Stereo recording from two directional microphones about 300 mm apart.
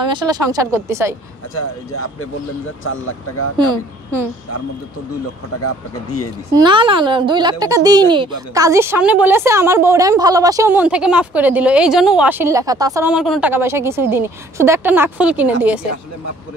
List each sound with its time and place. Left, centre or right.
0.1 s a woman's voice: centre
1.5 s speech: left
3.5 s a woman's voice: centre
5.6 s speech: left
6.5 s a woman's voice: centre